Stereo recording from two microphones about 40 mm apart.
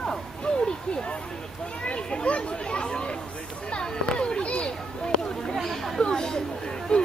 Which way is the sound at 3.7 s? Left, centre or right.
Left.